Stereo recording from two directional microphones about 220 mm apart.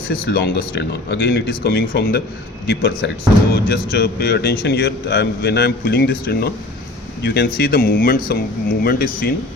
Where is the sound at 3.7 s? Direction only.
45° left (ahead or behind).